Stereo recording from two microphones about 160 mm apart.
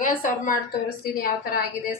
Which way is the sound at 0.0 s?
60° left (ahead or behind).